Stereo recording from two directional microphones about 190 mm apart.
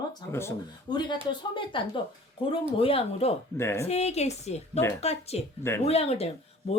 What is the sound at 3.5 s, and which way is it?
Speech, 15° left (ahead or behind).